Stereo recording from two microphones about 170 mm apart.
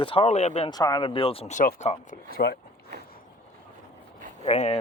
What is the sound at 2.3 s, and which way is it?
Speech, 70° left (ahead or behind).